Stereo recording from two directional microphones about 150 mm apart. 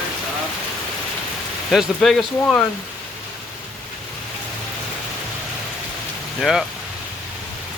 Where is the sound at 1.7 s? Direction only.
Centre (ahead or behind).